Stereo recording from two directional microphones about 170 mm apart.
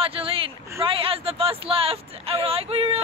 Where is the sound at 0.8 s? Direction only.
30° right (ahead or behind).